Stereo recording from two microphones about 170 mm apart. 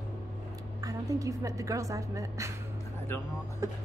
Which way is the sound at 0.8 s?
20° right (ahead or behind).